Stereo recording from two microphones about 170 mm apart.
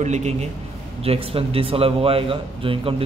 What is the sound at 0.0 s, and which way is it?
A man's voice, 40° right (ahead or behind).